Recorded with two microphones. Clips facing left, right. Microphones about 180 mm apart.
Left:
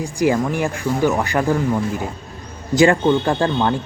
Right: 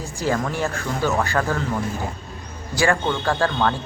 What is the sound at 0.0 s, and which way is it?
A man's voice, 15° left (ahead or behind).